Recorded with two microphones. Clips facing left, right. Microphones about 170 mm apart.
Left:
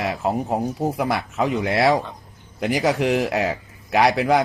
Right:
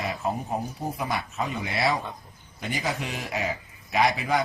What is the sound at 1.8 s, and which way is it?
Speech, 60° left (ahead or behind).